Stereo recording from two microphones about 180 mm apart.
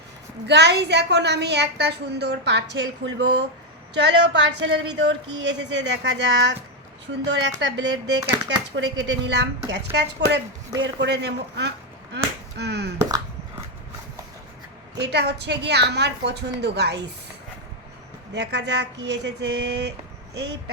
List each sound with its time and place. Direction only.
0.4 s a woman's voice: 70° right (ahead or behind)
13.0 s a sound: 20° right (ahead or behind)
14.9 s a woman's voice: 70° right (ahead or behind)
18.3 s a woman's voice: 70° right (ahead or behind)